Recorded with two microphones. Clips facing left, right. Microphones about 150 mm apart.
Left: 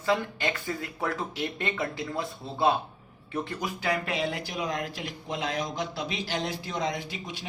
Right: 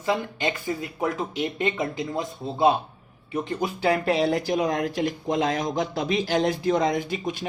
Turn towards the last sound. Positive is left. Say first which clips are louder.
# right 9 dB
turn(degrees=-50)  # may be behind; listen again after turning